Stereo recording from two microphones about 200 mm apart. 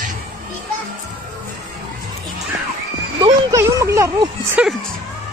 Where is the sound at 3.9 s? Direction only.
15° right (ahead or behind).